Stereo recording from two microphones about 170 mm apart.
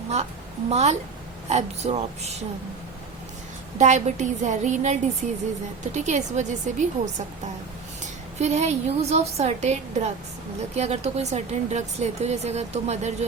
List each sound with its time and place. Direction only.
0.7 s speech: 40° right (ahead or behind)
3.8 s a woman's voice: 45° right (ahead or behind)